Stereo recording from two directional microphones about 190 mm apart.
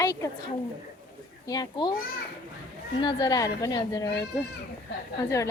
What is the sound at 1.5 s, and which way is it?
Speech, 20° left (ahead or behind).